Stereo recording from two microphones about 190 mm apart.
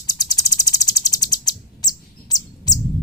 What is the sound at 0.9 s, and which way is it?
Chirp, 20° left (ahead or behind).